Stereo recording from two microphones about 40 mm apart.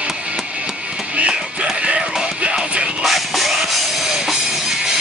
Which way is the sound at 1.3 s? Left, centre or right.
Centre.